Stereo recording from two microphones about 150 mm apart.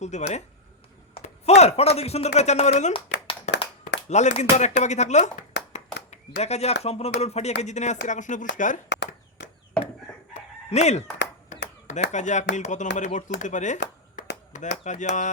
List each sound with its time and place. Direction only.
0.0 s a man's voice: 50° left (ahead or behind)
3.2 s clapping: 40° left (ahead or behind)
3.8 s speech: 50° left (ahead or behind)
10.7 s a man's voice: 50° left (ahead or behind)